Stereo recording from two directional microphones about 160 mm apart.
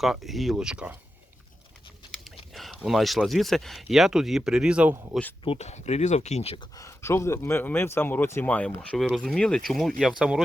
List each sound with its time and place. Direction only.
0.0 s speech: centre (ahead or behind)
2.5 s speech: centre (ahead or behind)
5.5 s speech: 45° left (ahead or behind)
6.7 s speech: 20° left (ahead or behind); by 10.4 s 5° right (ahead or behind)